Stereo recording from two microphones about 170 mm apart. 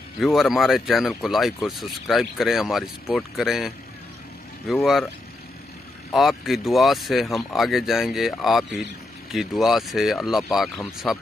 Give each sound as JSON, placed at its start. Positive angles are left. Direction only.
{"t": 0.2, "sound": "speech", "side_deg": 0}
{"t": 6.1, "sound": "speech", "side_deg": 0}